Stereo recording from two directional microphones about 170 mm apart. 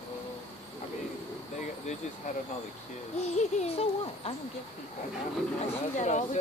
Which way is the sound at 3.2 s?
40° left (ahead or behind).